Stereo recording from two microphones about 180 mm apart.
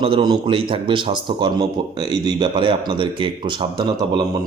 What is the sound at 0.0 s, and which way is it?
Speech, 25° right (ahead or behind).